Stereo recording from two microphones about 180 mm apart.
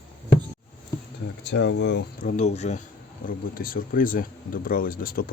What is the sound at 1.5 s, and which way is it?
Speech, 75° left (ahead or behind).